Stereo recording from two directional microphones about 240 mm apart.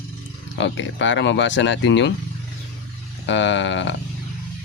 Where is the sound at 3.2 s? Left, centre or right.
Left.